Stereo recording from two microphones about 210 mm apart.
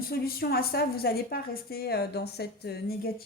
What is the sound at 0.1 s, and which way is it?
Speech, 45° left (ahead or behind).